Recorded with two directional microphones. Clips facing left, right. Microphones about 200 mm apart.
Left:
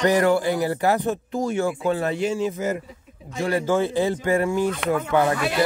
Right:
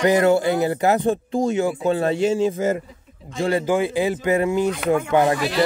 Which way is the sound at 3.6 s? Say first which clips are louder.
Right 1 dB; 15° right (ahead or behind).